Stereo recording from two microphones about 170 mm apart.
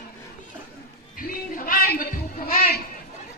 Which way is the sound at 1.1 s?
55° left (ahead or behind).